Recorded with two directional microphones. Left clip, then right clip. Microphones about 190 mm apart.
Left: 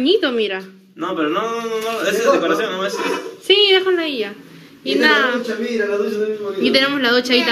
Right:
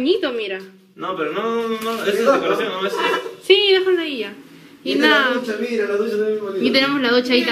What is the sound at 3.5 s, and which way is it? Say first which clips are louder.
Speech: left 1 dB; 10° left (ahead or behind).